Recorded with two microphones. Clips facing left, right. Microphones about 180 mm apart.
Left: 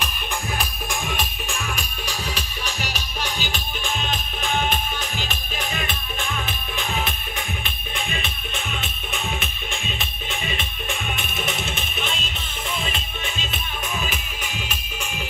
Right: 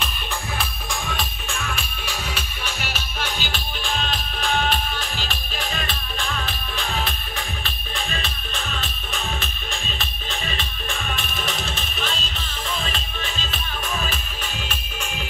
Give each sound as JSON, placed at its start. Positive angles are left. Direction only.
{"t": 0.6, "sound": "music", "side_deg": 15}
{"t": 2.0, "sound": "music", "side_deg": 40}
{"t": 4.1, "sound": "music", "side_deg": 20}
{"t": 7.6, "sound": "music", "side_deg": 20}
{"t": 10.4, "sound": "music", "side_deg": 15}